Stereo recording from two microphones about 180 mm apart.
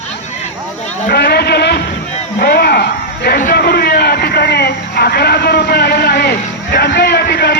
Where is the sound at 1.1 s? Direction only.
65° left (ahead or behind).